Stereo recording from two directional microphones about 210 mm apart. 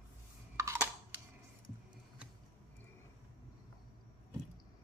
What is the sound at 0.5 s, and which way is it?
Computer keyboard, 15° right (ahead or behind).